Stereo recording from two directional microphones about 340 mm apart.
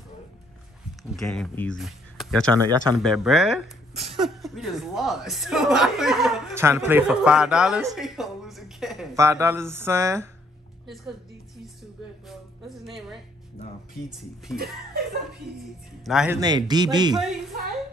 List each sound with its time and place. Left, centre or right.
1.1 s speech: centre
2.5 s a man's voice: centre
3.0 s speech: centre
3.9 s a sound: centre
4.2 s speech: centre
12.3 s speech: centre
16.0 s a man's voice: centre